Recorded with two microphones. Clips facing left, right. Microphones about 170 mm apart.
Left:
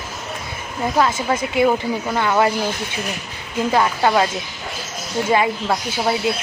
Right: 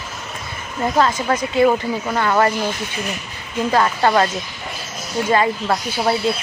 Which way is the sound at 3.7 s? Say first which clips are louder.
Right 1 dB; 10° left (ahead or behind).